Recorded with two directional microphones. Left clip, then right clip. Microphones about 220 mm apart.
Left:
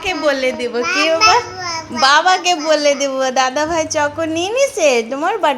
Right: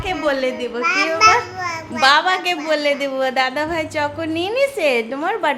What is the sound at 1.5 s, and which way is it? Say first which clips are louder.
Babbling: left 1 dB; 15° right (ahead or behind).